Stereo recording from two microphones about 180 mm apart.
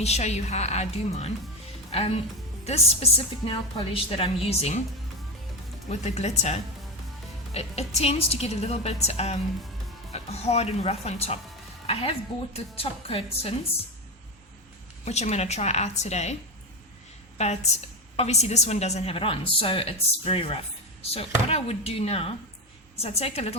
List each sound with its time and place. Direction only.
0.0 s a woman's voice: 40° left (ahead or behind)
5.9 s a woman's voice: 40° left (ahead or behind)
15.0 s a woman's voice: 35° left (ahead or behind)